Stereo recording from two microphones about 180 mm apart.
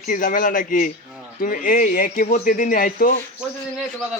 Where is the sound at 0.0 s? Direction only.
50° left (ahead or behind).